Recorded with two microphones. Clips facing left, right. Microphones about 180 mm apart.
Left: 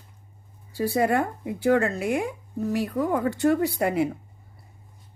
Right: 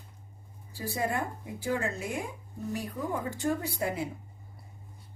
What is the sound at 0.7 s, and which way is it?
Speech, 65° left (ahead or behind).